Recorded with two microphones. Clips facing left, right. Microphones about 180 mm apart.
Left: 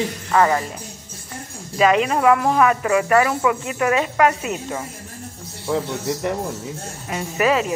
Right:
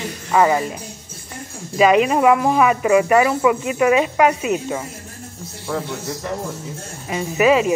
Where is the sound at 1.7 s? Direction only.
10° right (ahead or behind).